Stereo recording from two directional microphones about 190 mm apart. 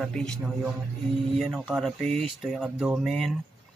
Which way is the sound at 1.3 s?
Centre (ahead or behind).